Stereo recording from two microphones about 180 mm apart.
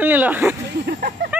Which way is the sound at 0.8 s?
65° right (ahead or behind).